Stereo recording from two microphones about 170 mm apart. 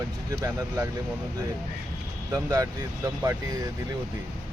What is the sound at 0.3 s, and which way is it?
Speech, 20° right (ahead or behind).